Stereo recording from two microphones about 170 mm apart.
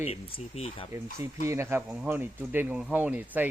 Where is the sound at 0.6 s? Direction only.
35° left (ahead or behind).